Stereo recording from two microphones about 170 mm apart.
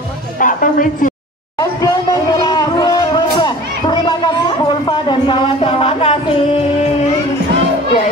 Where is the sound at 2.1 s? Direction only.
20° left (ahead or behind).